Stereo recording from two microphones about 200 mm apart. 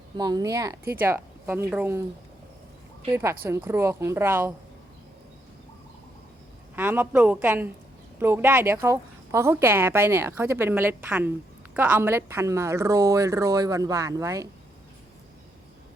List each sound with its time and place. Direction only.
0.2 s speech: 20° right (ahead or behind)
3.1 s speech: 15° right (ahead or behind)
6.7 s speech: 10° right (ahead or behind)